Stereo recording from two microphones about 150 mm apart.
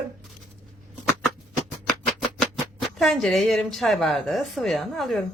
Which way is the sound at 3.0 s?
Centre (ahead or behind).